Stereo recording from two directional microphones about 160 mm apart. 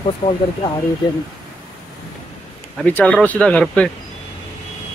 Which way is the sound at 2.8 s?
10° left (ahead or behind).